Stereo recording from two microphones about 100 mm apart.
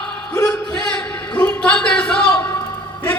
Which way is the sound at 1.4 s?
10° left (ahead or behind).